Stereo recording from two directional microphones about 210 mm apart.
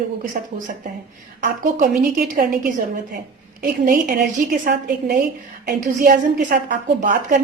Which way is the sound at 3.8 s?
40° right (ahead or behind).